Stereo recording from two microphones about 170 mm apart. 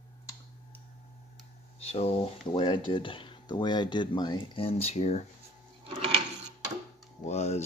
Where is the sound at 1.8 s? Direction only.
40° left (ahead or behind).